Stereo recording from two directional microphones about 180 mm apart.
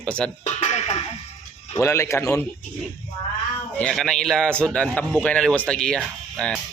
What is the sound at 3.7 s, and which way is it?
Speech, 5° left (ahead or behind).